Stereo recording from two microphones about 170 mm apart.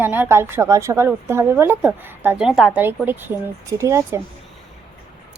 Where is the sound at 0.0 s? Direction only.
10° right (ahead or behind).